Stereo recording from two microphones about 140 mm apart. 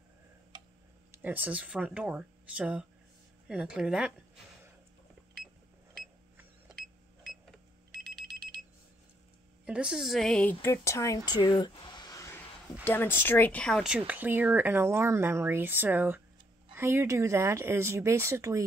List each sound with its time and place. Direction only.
0.5 s tick-tock: 30° right (ahead or behind)
1.1 s a woman's voice: 10° right (ahead or behind)
7.9 s alarm: 5° left (ahead or behind)
9.7 s a woman's voice: 5° right (ahead or behind)
10.6 s speech: 20° left (ahead or behind)
13.8 s speech: 10° right (ahead or behind)